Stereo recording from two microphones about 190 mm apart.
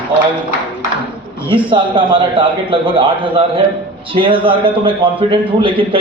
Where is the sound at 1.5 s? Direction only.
25° right (ahead or behind).